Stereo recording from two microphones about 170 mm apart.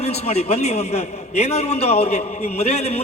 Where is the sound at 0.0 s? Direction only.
40° left (ahead or behind).